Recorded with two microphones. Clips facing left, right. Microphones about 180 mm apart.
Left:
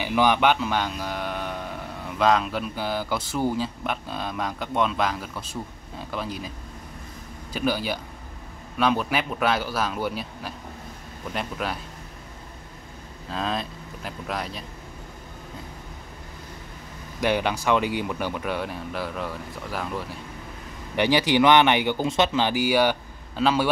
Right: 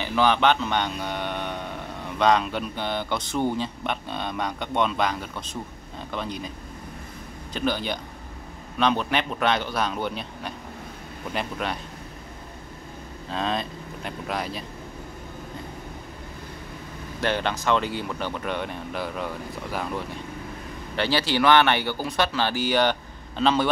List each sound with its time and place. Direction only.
0.0 s speech: 10° left (ahead or behind)
7.5 s speech: 5° left (ahead or behind)
13.3 s speech: centre (ahead or behind)
17.2 s speech: 10° left (ahead or behind)
20.9 s speech: 15° left (ahead or behind)